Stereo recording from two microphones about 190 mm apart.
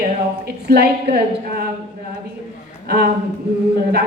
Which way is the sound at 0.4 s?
55° right (ahead or behind).